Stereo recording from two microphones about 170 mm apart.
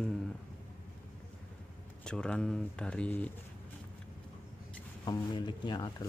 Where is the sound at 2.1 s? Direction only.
5° left (ahead or behind).